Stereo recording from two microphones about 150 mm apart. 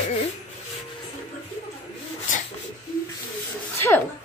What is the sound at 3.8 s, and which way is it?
Speech, 15° left (ahead or behind).